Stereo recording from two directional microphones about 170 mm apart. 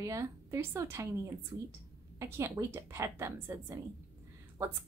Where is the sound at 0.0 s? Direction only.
20° right (ahead or behind).